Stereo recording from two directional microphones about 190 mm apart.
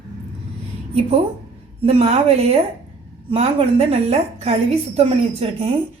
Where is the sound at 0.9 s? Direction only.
30° right (ahead or behind).